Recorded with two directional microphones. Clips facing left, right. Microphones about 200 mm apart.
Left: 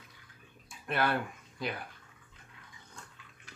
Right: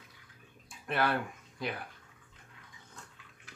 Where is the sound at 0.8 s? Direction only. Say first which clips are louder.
Even; centre (ahead or behind).